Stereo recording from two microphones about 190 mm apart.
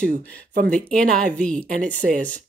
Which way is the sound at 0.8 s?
5° left (ahead or behind).